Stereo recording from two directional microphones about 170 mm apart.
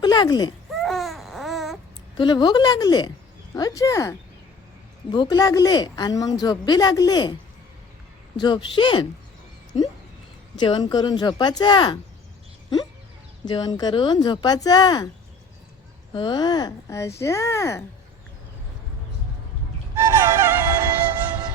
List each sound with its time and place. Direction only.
0.0 s speech: 25° left (ahead or behind)
0.7 s baby cry: centre (ahead or behind)
2.1 s speech: 25° left (ahead or behind)
5.1 s speech: 25° left (ahead or behind)
8.4 s speech: 25° left (ahead or behind)
10.6 s speech: 25° left (ahead or behind)
13.4 s speech: 25° left (ahead or behind)
16.1 s speech: 25° left (ahead or behind)
20.0 s music: 15° right (ahead or behind)